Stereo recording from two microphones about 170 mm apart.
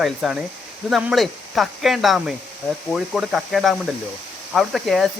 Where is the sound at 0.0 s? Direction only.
Centre (ahead or behind).